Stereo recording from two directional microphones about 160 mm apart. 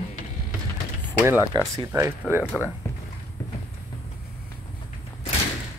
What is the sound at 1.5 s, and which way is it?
Speech, 25° right (ahead or behind).